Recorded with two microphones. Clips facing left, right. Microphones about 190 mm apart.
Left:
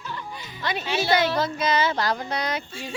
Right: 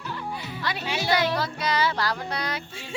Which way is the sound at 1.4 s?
20° left (ahead or behind).